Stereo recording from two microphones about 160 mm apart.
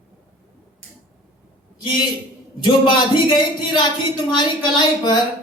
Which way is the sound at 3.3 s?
30° left (ahead or behind).